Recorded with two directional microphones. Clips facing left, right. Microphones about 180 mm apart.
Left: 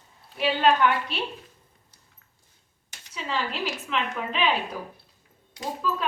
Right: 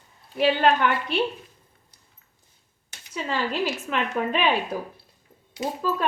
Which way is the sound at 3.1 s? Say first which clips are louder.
Right 3 dB; 50° right (ahead or behind).